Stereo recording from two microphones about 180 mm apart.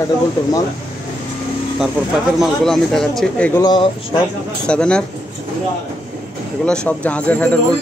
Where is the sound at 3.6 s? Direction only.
25° left (ahead or behind).